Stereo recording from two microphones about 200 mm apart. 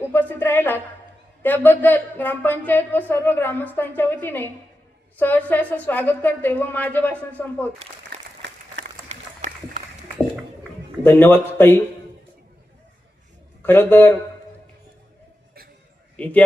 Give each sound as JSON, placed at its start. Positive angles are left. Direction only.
{"t": 0.1, "sound": "speech", "side_deg": 10}
{"t": 8.7, "sound": "a sound", "side_deg": -35}
{"t": 11.0, "sound": "speech", "side_deg": 10}
{"t": 13.6, "sound": "speech", "side_deg": 10}
{"t": 16.1, "sound": "speech", "side_deg": 5}